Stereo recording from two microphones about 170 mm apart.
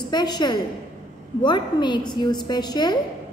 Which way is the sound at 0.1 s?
25° left (ahead or behind).